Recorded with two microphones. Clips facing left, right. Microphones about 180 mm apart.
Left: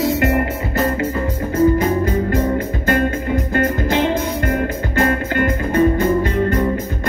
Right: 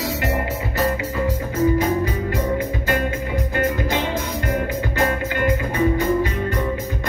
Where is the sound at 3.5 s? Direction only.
50° left (ahead or behind).